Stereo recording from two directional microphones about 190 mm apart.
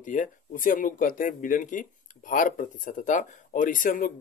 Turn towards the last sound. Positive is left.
turn(degrees=45)  # may be behind; listen again after turning